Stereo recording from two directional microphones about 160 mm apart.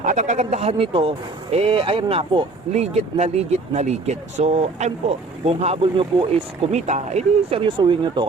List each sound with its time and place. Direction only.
0.0 s speech: 50° right (ahead or behind); by 8.2 s 30° right (ahead or behind)